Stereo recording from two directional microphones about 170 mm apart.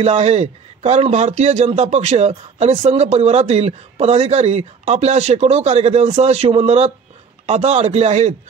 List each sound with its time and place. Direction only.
0.0 s speech: 40° right (ahead or behind)